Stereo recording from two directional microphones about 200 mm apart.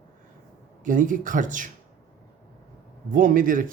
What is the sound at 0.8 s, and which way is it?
Speech, 40° right (ahead or behind).